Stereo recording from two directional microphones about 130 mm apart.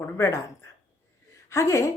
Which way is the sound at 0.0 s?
15° left (ahead or behind).